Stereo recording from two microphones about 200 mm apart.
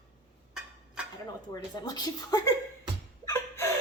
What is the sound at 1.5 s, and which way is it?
A woman's voice, 20° left (ahead or behind).